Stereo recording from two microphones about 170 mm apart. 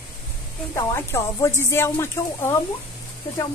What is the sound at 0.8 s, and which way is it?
Speech, 15° left (ahead or behind).